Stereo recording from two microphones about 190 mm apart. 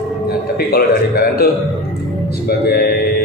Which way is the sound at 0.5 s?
55° left (ahead or behind).